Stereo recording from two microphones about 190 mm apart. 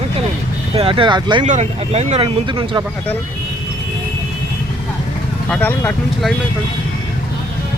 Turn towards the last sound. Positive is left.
turn(degrees=5)  # may be behind; listen again after turning